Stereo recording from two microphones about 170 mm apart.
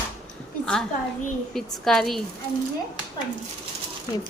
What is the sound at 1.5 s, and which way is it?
Speech, centre (ahead or behind).